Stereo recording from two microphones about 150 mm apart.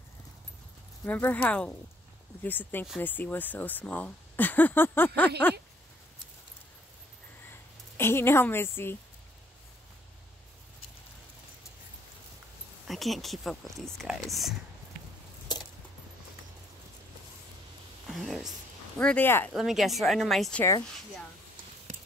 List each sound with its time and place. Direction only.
1.0 s speech: 10° left (ahead or behind)
8.0 s speech: 15° left (ahead or behind)
12.8 s speech: centre (ahead or behind)
18.0 s speech: centre (ahead or behind)
19.5 s speech: 5° right (ahead or behind)